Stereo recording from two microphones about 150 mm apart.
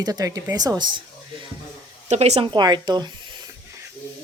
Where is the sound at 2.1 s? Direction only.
45° right (ahead or behind).